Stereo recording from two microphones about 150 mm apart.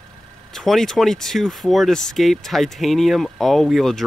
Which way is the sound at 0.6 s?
Centre (ahead or behind).